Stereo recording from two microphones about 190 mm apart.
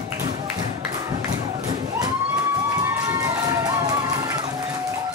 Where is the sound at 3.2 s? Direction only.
20° right (ahead or behind).